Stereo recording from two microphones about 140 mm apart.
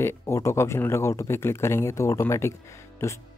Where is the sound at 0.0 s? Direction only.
20° left (ahead or behind).